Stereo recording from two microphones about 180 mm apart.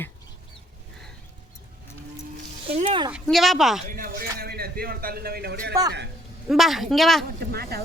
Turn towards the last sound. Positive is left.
turn(degrees=-60)  # may be behind; listen again after turning